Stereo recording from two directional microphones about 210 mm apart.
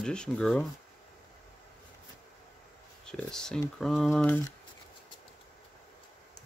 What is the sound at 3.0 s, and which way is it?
Speech, 5° left (ahead or behind).